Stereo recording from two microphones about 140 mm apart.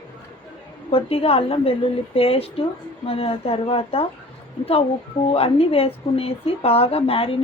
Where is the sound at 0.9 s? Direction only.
45° left (ahead or behind).